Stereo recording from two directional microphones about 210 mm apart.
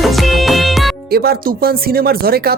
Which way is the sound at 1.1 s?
45° right (ahead or behind).